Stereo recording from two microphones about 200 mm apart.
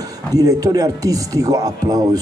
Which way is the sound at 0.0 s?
20° right (ahead or behind).